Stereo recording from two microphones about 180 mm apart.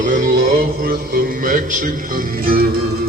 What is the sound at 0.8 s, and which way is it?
Speech, 55° right (ahead or behind).